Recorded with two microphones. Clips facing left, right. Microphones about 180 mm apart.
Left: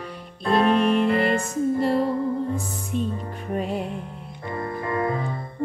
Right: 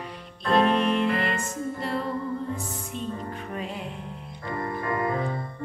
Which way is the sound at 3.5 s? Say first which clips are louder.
Left 10 dB; 45° left (ahead or behind).